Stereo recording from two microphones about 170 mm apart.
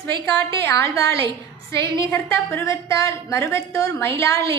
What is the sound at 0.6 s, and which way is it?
Speech, 15° left (ahead or behind).